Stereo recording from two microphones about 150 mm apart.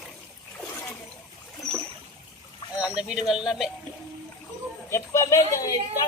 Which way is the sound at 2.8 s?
5° right (ahead or behind).